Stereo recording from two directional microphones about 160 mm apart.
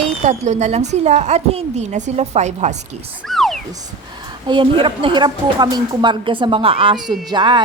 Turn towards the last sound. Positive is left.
turn(degrees=-30)  # may be behind; listen again after turning